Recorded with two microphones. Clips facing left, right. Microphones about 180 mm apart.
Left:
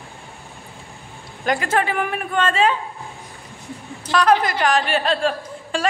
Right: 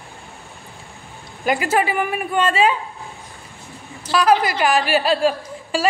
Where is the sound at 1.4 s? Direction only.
5° right (ahead or behind).